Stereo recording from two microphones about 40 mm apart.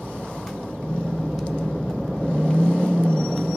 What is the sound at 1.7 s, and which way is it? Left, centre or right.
Vehicle, centre.